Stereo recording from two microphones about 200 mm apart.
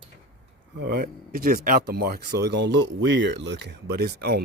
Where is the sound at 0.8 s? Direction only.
50° right (ahead or behind).